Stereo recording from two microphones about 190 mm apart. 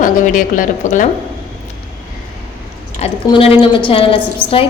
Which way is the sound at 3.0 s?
30° left (ahead or behind).